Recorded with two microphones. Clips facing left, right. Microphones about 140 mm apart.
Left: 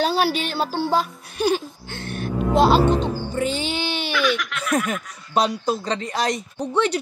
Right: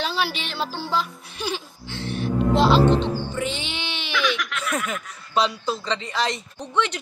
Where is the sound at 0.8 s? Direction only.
45° left (ahead or behind).